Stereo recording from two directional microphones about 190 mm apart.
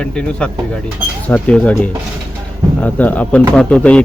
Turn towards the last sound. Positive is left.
turn(degrees=5)  # may be behind; listen again after turning